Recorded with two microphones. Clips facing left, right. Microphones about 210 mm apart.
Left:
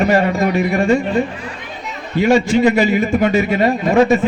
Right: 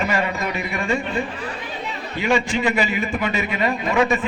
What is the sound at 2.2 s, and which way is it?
A man's voice, 40° left (ahead or behind).